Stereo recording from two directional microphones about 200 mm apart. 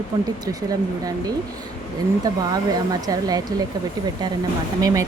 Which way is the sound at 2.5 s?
20° right (ahead or behind).